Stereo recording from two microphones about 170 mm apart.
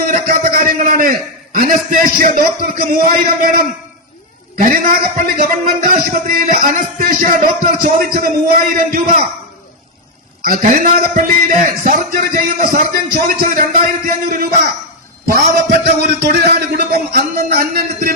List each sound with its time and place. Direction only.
0.1 s a sound: 55° right (ahead or behind)
1.5 s a man's voice: 55° right (ahead or behind)
4.5 s a man's voice: 55° right (ahead or behind)
10.4 s a man's voice: 55° right (ahead or behind)
15.8 s a man's voice: 75° right (ahead or behind)